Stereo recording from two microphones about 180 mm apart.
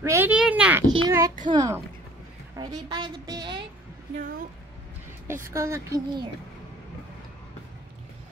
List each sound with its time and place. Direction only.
0.0 s a child's voice: 15° right (ahead or behind)
0.8 s a sound: 20° right (ahead or behind)
1.5 s a woman's voice: 20° right (ahead or behind)
5.3 s a woman's voice: 15° right (ahead or behind)